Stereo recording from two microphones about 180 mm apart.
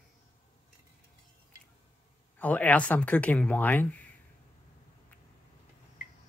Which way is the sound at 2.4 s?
10° left (ahead or behind).